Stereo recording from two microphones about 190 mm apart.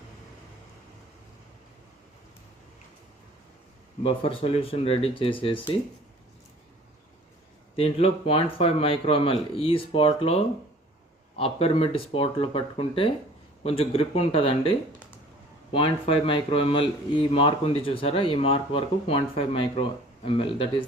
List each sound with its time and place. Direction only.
4.0 s a man's voice: 30° left (ahead or behind)
7.8 s a man's voice: 30° left (ahead or behind)
15.7 s a man's voice: 30° left (ahead or behind)